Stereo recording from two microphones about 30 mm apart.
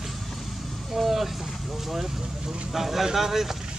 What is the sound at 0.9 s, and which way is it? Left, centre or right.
Vehicle, centre.